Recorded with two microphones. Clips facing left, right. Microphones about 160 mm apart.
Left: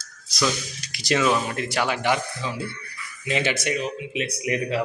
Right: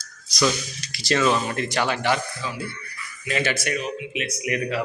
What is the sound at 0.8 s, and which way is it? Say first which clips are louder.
Speech: right 1 dB; 15° left (ahead or behind).